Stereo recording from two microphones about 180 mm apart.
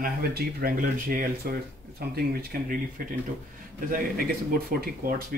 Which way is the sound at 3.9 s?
55° right (ahead or behind).